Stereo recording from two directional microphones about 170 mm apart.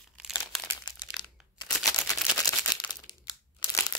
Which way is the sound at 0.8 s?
25° left (ahead or behind).